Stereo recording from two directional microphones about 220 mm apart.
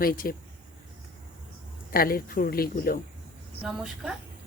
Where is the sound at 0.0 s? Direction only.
40° left (ahead or behind).